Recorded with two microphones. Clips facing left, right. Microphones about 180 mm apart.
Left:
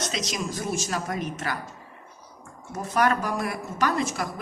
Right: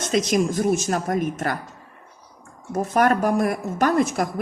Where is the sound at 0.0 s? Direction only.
55° right (ahead or behind).